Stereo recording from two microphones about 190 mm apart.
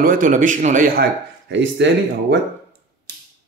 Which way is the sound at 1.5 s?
65° right (ahead or behind).